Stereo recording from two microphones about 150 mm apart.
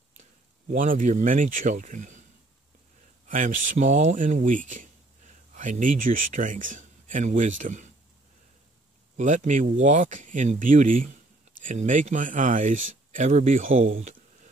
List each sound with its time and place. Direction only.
0.2 s speech: 60° right (ahead or behind)
3.3 s speech: 60° right (ahead or behind)
9.1 s speech: 55° right (ahead or behind)
13.8 s a sound: 55° right (ahead or behind)